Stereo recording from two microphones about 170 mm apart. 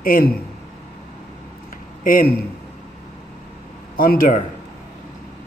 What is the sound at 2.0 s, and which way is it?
Speech, 55° left (ahead or behind).